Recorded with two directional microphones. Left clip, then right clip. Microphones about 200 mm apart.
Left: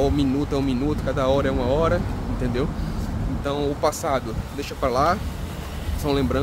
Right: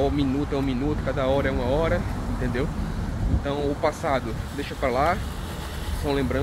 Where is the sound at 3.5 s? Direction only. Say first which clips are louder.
Left 2 dB; 15° left (ahead or behind).